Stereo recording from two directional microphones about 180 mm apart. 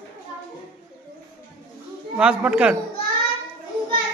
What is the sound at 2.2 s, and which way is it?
Speech, 5° right (ahead or behind).